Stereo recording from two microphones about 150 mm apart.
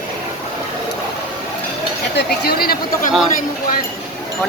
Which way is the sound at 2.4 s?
90° left.